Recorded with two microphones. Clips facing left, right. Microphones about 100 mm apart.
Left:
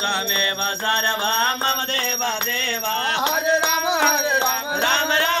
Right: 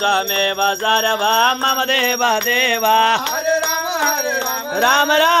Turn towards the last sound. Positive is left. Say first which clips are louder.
# right 7 dB
turn(degrees=-90)